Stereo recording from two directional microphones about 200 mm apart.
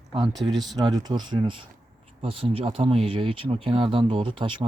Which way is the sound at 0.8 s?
20° right (ahead or behind).